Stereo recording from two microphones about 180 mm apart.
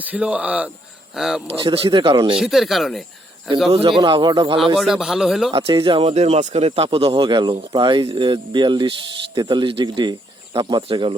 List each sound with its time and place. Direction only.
0.0 s speech: 10° right (ahead or behind)
1.6 s speech: 30° right (ahead or behind)
2.4 s a man's voice: centre (ahead or behind)
3.7 s speech: 30° right (ahead or behind)
4.6 s a man's voice: centre (ahead or behind)
5.5 s speech: 30° right (ahead or behind)